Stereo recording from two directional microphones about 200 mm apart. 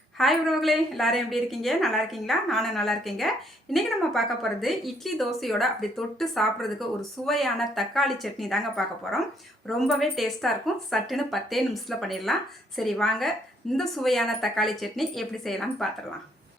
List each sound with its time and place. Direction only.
0.2 s a woman's voice: centre (ahead or behind)